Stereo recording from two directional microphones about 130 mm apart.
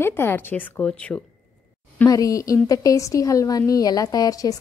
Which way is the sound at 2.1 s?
25° left (ahead or behind).